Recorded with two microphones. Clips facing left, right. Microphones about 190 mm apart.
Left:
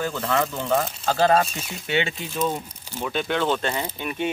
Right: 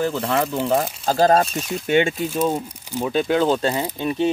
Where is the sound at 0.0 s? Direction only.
30° right (ahead or behind); by 2.2 s 50° right (ahead or behind).